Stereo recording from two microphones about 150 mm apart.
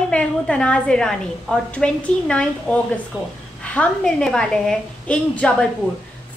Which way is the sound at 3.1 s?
5° right (ahead or behind).